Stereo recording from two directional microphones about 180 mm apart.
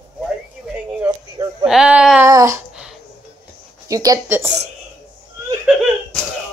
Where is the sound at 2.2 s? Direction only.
15° right (ahead or behind).